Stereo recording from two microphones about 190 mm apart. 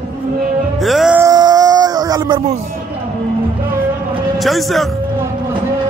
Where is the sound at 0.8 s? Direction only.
Centre (ahead or behind).